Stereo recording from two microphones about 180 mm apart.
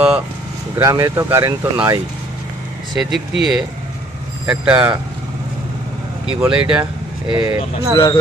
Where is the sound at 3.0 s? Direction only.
Centre (ahead or behind).